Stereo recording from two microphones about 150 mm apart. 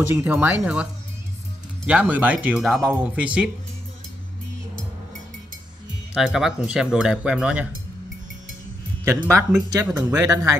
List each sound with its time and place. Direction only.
0.1 s speech: 15° right (ahead or behind)
1.9 s speech: 10° right (ahead or behind)
6.1 s speech: 5° right (ahead or behind)
9.0 s speech: 15° right (ahead or behind)